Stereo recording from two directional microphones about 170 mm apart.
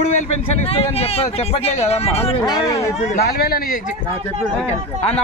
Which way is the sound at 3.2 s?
70° left (ahead or behind).